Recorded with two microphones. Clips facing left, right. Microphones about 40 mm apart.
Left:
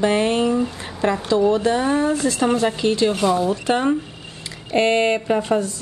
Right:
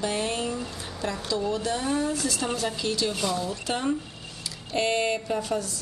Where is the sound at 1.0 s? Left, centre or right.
Left.